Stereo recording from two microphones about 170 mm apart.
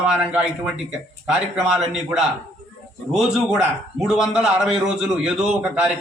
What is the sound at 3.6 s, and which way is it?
A man's voice, 5° right (ahead or behind).